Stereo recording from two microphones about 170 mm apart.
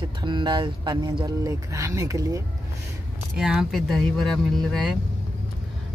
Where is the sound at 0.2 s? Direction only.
25° right (ahead or behind).